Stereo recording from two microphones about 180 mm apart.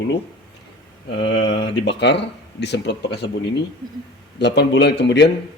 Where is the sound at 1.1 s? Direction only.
75° left (ahead or behind).